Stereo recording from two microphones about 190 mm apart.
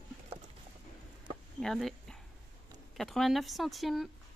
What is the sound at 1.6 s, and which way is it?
Speech, centre (ahead or behind).